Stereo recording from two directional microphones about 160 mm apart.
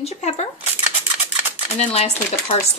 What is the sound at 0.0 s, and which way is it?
Speech, 40° left (ahead or behind).